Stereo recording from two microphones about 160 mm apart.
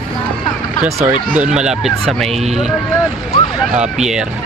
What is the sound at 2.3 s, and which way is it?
Speech, 40° right (ahead or behind).